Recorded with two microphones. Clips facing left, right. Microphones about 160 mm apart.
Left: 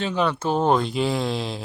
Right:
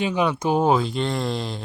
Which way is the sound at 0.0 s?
10° right (ahead or behind).